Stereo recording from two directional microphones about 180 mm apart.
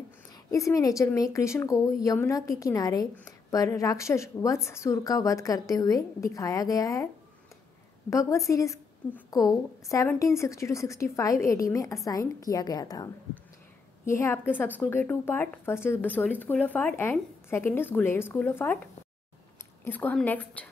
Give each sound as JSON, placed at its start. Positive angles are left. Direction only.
{"t": 0.5, "sound": "a woman's voice", "side_deg": 15}
{"t": 8.1, "sound": "a woman's voice", "side_deg": 15}
{"t": 19.8, "sound": "a woman's voice", "side_deg": 10}